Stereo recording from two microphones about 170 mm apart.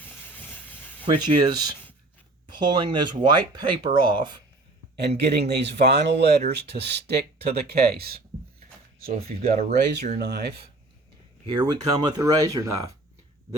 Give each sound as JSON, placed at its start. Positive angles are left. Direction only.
{"t": 0.0, "sound": "vehicle", "side_deg": 10}
{"t": 1.0, "sound": "speech", "side_deg": -25}
{"t": 4.9, "sound": "speech", "side_deg": -75}
{"t": 9.3, "sound": "speech", "side_deg": -35}
{"t": 10.2, "sound": "speech", "side_deg": -75}
{"t": 11.4, "sound": "speech", "side_deg": -25}